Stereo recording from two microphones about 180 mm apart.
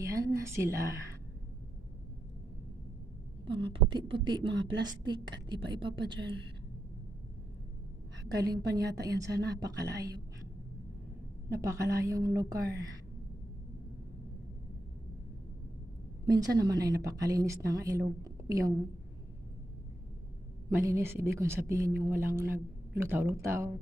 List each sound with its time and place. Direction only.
0.0 s a woman's voice: 15° right (ahead or behind)
3.4 s a woman's voice: 30° right (ahead or behind)
8.3 s a woman's voice: 20° right (ahead or behind)
11.5 s a woman's voice: 15° right (ahead or behind)
16.3 s a woman's voice: 20° right (ahead or behind)
20.7 s a woman's voice: 15° right (ahead or behind)